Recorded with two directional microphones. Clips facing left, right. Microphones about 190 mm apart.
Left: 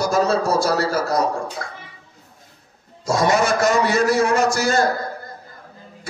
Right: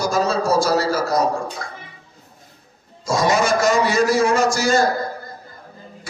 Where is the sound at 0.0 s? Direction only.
60° left (ahead or behind).